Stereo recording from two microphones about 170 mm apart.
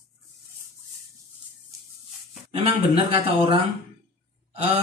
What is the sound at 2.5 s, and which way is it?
Speech, 35° right (ahead or behind).